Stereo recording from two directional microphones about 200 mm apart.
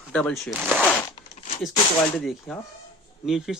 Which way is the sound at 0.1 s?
Centre (ahead or behind).